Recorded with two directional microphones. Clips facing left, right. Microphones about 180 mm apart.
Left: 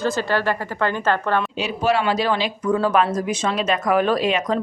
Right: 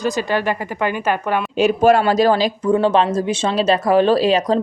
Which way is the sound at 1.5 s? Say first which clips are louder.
Right 7 dB; 50° right (ahead or behind).